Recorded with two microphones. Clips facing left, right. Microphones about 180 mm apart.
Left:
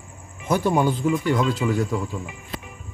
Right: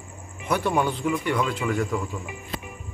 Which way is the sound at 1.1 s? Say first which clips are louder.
Left 3 dB; 25° left (ahead or behind).